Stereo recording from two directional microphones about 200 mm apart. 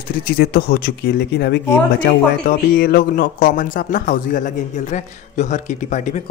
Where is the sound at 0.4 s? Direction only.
50° left (ahead or behind).